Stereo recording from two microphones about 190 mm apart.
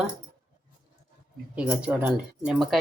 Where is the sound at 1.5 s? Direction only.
5° right (ahead or behind).